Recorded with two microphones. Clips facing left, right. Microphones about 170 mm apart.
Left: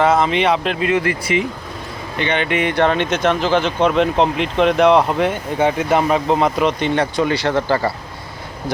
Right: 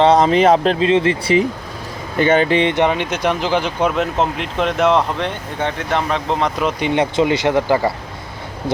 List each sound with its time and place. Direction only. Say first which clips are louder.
0.0 s speech: right 3 dB; 35° right (ahead or behind); by 6.7 s 5° left (ahead or behind)
6.7 s speech: right 2 dB; 15° right (ahead or behind)